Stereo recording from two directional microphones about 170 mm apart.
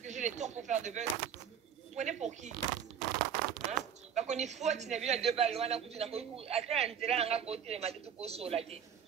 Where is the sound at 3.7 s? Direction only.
40° right (ahead or behind).